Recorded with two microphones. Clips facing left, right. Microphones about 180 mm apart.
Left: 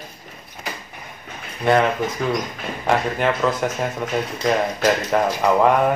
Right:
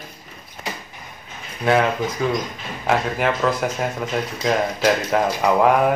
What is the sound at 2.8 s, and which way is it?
Speech, centre (ahead or behind).